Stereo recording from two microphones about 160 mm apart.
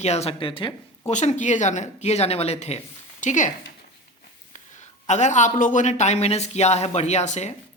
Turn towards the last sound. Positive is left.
turn(degrees=45)  # may be behind; listen again after turning